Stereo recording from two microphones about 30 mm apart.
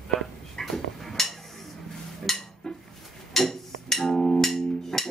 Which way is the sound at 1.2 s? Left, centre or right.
Centre.